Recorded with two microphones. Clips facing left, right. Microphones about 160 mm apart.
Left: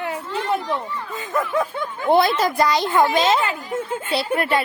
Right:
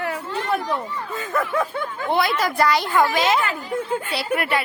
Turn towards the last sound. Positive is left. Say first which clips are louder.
# left 2 dB
turn(degrees=30)  # may be behind; listen again after turning